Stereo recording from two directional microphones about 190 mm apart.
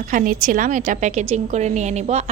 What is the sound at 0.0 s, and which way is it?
A woman's voice, 45° right (ahead or behind).